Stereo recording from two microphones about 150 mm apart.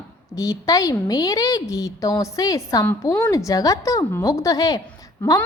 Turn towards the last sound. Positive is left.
turn(degrees=25)  # may be behind; listen again after turning